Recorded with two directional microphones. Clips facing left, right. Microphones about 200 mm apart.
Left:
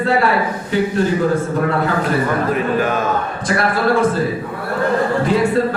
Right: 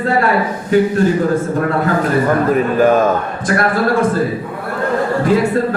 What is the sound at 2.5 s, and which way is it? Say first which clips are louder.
Speech: right 6 dB; 45° right (ahead or behind).